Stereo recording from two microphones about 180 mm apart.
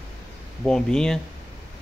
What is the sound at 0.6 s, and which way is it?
Speech, 5° left (ahead or behind).